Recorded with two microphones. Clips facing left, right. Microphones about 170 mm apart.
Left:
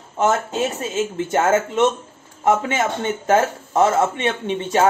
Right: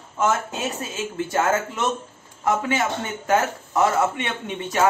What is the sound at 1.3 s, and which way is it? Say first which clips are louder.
Speech: left 5 dB; 20° left (ahead or behind).